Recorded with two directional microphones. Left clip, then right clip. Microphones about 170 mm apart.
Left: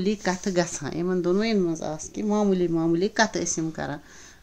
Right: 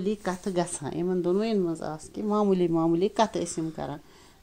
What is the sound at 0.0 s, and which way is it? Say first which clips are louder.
Speech: left 4 dB; 10° left (ahead or behind).